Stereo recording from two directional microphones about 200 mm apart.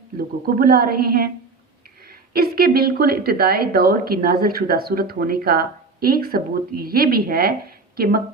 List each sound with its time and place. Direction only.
0.2 s a woman's voice: 45° right (ahead or behind)
2.3 s a woman's voice: 50° right (ahead or behind)